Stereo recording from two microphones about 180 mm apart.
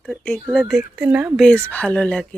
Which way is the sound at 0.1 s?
Centre (ahead or behind).